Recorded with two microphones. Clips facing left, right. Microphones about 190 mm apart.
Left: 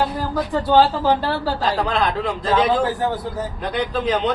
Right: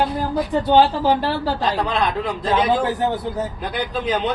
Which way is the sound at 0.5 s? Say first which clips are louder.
Even; 15° right (ahead or behind).